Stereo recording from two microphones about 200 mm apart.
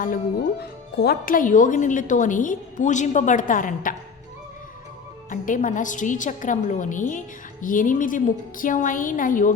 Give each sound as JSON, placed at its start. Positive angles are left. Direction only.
{"t": 0.6, "sound": "speech", "side_deg": 50}
{"t": 5.3, "sound": "speech", "side_deg": 40}